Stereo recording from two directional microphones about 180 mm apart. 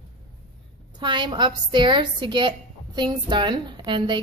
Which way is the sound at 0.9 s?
25° right (ahead or behind).